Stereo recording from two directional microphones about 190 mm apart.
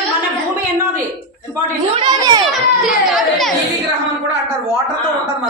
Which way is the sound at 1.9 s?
20° right (ahead or behind).